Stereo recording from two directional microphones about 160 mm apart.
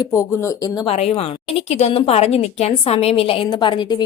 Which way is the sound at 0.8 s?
40° left (ahead or behind).